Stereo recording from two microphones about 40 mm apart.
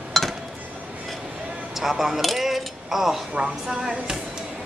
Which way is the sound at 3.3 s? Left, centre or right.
Right.